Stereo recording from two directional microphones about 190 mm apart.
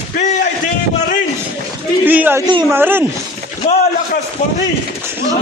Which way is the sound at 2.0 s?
10° right (ahead or behind).